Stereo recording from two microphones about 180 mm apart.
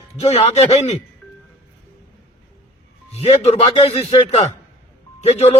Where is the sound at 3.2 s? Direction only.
35° left (ahead or behind).